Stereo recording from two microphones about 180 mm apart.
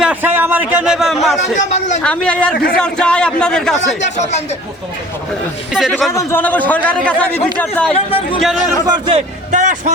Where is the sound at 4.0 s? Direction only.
40° left (ahead or behind).